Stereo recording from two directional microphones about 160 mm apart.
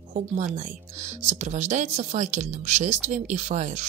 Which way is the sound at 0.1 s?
50° right (ahead or behind).